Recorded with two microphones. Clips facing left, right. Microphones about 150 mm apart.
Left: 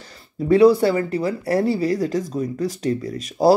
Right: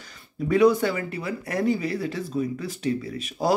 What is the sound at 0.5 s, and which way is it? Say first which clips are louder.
Speech: left 5 dB; 35° left (ahead or behind).